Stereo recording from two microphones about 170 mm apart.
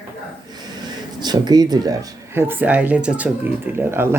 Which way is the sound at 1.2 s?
25° right (ahead or behind).